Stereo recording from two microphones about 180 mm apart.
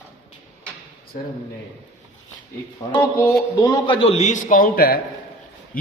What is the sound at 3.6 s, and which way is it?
A man's voice, 25° left (ahead or behind).